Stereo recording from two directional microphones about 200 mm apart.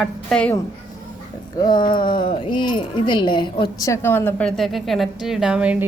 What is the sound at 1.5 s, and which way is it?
A woman's voice, 20° left (ahead or behind).